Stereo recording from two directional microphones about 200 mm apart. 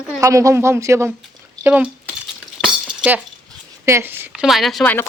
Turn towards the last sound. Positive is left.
turn(degrees=0)  # may be behind; listen again after turning